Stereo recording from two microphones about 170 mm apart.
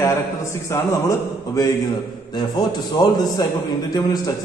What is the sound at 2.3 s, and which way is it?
A man's voice, 25° left (ahead or behind).